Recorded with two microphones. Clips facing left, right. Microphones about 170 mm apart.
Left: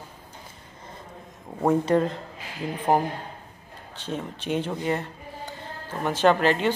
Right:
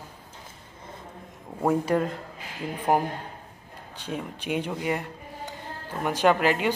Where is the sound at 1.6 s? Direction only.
5° right (ahead or behind).